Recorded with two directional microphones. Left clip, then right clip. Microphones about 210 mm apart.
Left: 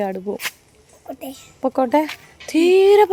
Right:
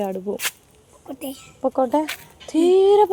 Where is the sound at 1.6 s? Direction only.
20° left (ahead or behind).